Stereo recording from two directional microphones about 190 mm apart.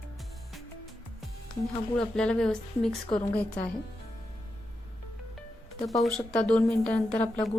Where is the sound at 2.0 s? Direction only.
5° left (ahead or behind).